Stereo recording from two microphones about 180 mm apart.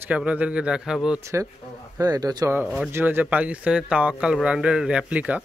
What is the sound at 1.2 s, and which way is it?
A man's voice, 15° right (ahead or behind).